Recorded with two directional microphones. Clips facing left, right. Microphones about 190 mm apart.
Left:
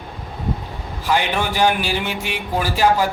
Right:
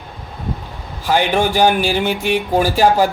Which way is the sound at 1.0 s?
35° right (ahead or behind).